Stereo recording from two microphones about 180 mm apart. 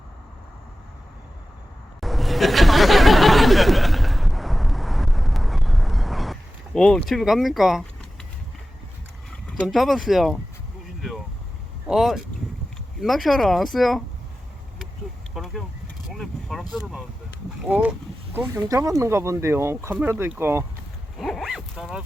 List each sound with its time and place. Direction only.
2.0 s a sound: centre (ahead or behind)
9.5 s speech: 5° left (ahead or behind)
11.9 s speech: centre (ahead or behind)
15.3 s a sound: 5° right (ahead or behind)
16.0 s speech: centre (ahead or behind)
21.2 s dog: centre (ahead or behind)